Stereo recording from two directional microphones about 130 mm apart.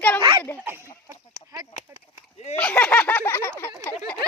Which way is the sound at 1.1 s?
30° right (ahead or behind).